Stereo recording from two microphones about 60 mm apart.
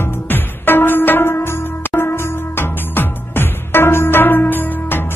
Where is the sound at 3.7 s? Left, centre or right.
Left.